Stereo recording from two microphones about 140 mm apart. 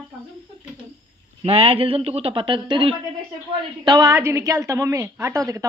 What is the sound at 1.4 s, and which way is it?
A woman's voice, 45° right (ahead or behind).